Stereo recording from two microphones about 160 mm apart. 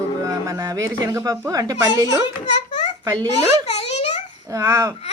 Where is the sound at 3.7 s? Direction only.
40° left (ahead or behind).